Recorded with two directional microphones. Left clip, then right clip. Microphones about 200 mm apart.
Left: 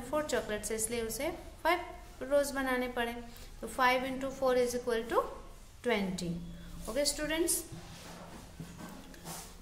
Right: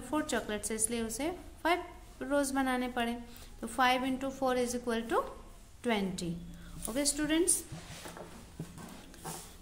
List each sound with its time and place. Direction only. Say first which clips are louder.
0.1 s a woman's voice: left 1 dB; 30° right (ahead or behind)